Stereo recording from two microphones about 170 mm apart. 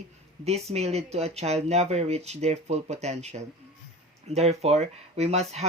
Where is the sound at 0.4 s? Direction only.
40° right (ahead or behind).